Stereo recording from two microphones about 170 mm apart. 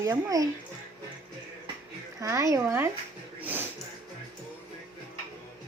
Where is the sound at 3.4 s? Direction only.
10° right (ahead or behind).